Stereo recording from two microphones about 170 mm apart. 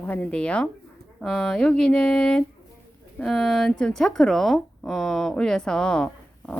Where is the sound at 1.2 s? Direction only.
Centre (ahead or behind).